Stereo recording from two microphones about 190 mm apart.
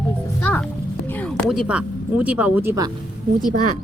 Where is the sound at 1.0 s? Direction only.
10° left (ahead or behind); by 2.9 s 15° right (ahead or behind).